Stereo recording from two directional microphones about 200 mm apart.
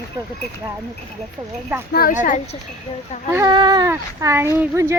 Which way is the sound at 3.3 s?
20° right (ahead or behind).